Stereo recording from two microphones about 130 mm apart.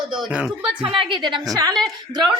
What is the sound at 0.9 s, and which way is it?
Speech, 40° right (ahead or behind).